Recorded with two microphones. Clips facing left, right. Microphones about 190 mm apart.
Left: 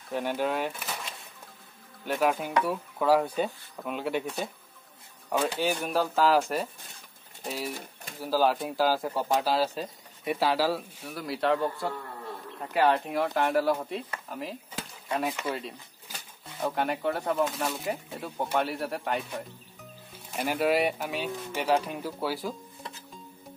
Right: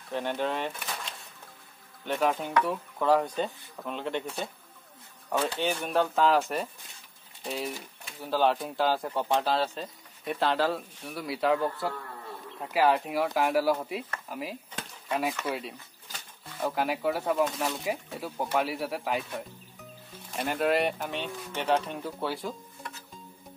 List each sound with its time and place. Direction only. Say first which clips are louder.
0.1 s speech: left 1 dB; 10° left (ahead or behind)
5.3 s speech: left 1 dB; 15° left (ahead or behind)
5.6 s speech: even; 5° left (ahead or behind)
14.3 s a sound: even; 5° right (ahead or behind)
16.5 s speech: even; centre (ahead or behind)
20.3 s speech: left 1 dB; 5° left (ahead or behind)